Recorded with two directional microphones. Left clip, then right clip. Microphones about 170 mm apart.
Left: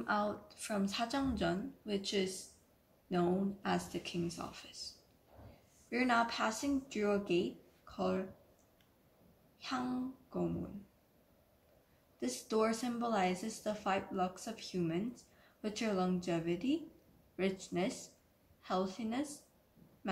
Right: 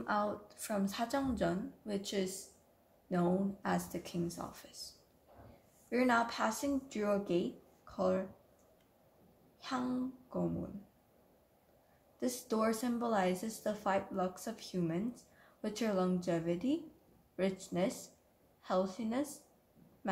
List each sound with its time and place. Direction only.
0.0 s speech: 55° right (ahead or behind)
5.9 s speech: 55° right (ahead or behind)
9.6 s speech: 55° right (ahead or behind)
12.2 s speech: 55° right (ahead or behind)